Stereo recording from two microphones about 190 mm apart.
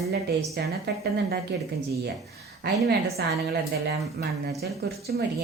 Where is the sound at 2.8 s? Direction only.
55° right (ahead or behind).